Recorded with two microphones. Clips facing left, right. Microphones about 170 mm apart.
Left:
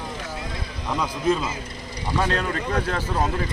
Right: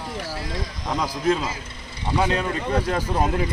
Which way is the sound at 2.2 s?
10° right (ahead or behind).